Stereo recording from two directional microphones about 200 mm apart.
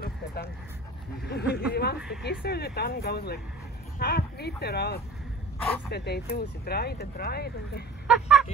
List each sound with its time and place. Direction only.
0.0 s a sound: 50° left (ahead or behind)
1.2 s speech: 50° left (ahead or behind)
8.1 s vehicle: centre (ahead or behind)